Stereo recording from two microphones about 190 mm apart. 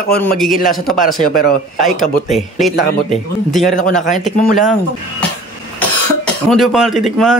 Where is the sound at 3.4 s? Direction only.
Centre (ahead or behind).